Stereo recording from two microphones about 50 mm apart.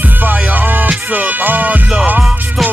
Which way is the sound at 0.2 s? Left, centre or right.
Right.